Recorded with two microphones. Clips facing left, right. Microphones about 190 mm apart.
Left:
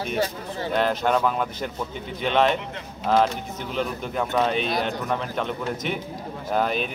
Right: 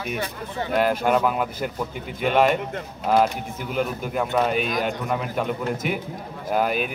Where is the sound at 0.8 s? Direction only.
10° right (ahead or behind).